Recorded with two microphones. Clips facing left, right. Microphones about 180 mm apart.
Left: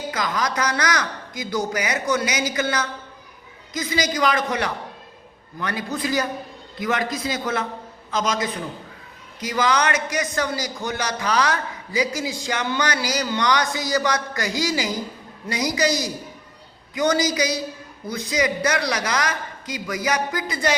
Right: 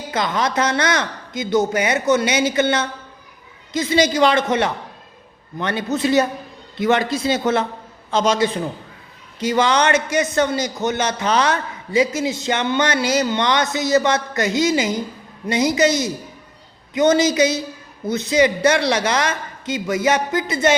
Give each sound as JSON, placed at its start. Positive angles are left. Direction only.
{"t": 0.1, "sound": "speech", "side_deg": -25}